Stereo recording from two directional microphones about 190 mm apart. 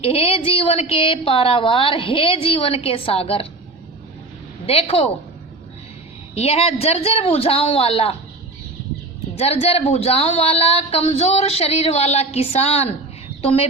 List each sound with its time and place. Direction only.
0.0 s a woman's voice: 30° left (ahead or behind)
4.6 s a woman's voice: 30° left (ahead or behind)
6.3 s a woman's voice: 30° left (ahead or behind)
9.3 s a woman's voice: 30° left (ahead or behind)